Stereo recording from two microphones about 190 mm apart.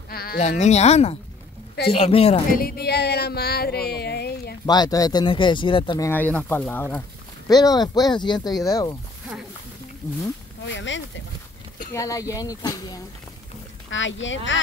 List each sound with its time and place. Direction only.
0.1 s sheep: 55° left (ahead or behind)
0.4 s speech: 35° left (ahead or behind)
2.6 s a sound: 55° left (ahead or behind)
4.6 s speech: 20° left (ahead or behind)
7.4 s speech: 20° left (ahead or behind)
10.6 s speech: 75° left (ahead or behind)
11.9 s speech: 15° left (ahead or behind)
13.8 s speech: 80° left